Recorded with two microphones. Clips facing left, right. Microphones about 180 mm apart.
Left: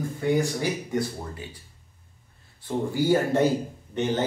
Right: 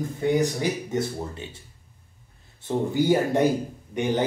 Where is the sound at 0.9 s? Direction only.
25° right (ahead or behind).